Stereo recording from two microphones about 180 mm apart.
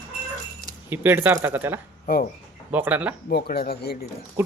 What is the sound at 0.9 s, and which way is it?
Speech, 10° right (ahead or behind).